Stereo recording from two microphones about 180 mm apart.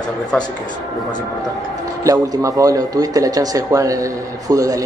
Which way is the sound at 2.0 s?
20° right (ahead or behind).